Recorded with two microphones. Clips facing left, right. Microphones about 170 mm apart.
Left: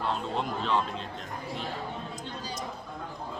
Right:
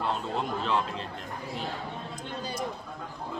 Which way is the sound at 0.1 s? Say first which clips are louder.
Even; centre (ahead or behind).